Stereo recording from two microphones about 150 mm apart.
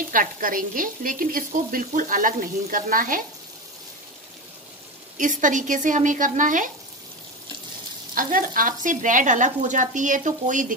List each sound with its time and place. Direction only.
0.1 s frying: 65° right (ahead or behind)
5.1 s frying: 60° right (ahead or behind)
8.1 s frying: 65° right (ahead or behind)